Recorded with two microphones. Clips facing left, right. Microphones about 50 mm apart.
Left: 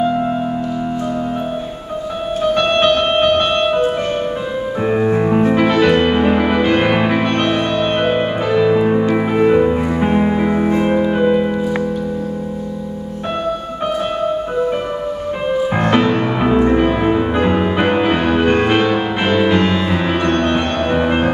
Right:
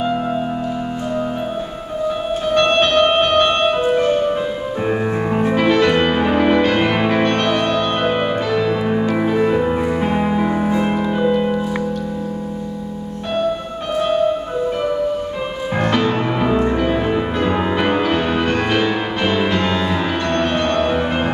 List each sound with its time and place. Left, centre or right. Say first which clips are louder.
2.4 s music: left 2 dB; centre
4.8 s music: left 5 dB; centre
15.8 s music: even; centre